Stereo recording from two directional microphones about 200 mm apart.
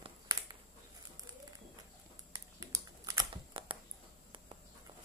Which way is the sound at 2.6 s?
20° right (ahead or behind).